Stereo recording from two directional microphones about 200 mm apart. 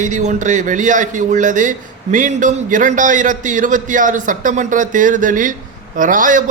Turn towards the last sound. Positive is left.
turn(degrees=-40)  # may be behind; listen again after turning